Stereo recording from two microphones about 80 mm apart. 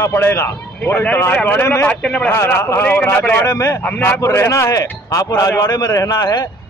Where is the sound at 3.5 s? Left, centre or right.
Left.